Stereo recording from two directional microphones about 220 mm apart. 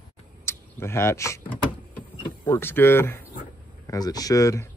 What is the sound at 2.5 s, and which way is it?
Speech, 10° left (ahead or behind).